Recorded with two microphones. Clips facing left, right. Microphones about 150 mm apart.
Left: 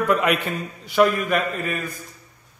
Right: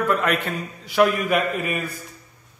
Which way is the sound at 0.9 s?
5° right (ahead or behind).